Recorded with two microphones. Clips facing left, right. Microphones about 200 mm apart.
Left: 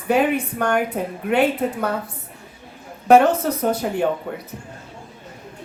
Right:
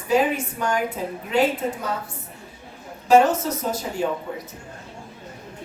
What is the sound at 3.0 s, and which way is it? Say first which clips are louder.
A woman's voice: left 3 dB; 60° left (ahead or behind).